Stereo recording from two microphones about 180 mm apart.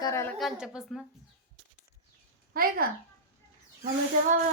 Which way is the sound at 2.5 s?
55° right (ahead or behind).